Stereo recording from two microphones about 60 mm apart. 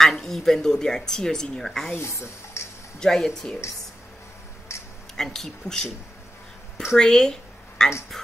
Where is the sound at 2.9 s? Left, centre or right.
Centre.